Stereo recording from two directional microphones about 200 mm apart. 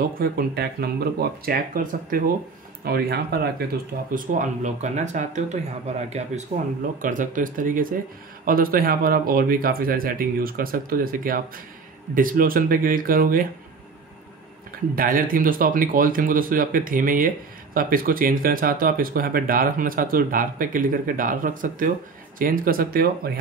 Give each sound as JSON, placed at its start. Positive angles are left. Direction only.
{"t": 0.2, "sound": "speech", "side_deg": -50}
{"t": 4.1, "sound": "speech", "side_deg": -40}
{"t": 15.0, "sound": "speech", "side_deg": -45}